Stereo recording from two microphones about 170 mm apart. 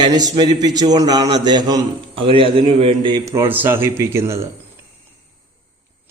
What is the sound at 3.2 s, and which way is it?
Speech, 15° right (ahead or behind).